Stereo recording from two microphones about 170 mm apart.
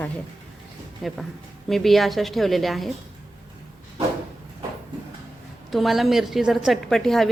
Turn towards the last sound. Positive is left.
turn(degrees=0)  # may be behind; listen again after turning